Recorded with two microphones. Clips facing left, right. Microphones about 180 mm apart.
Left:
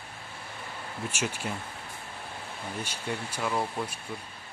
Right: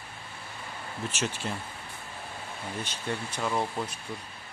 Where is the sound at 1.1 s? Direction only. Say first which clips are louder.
Even; 10° left (ahead or behind).